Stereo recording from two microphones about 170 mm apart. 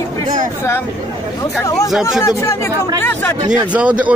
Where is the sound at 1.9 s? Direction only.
Centre (ahead or behind).